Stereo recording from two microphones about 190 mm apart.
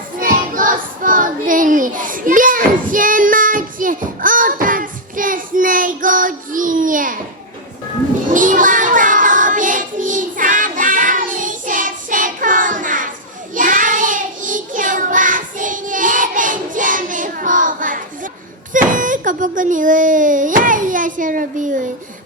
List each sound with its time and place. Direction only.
0.2 s child singing: 45° right (ahead or behind)
8.3 s child singing: 45° right (ahead or behind)
18.7 s a child's voice: 45° right (ahead or behind)